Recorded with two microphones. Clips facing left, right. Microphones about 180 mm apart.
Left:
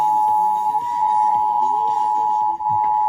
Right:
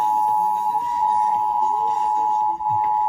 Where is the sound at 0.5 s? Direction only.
30° left (ahead or behind).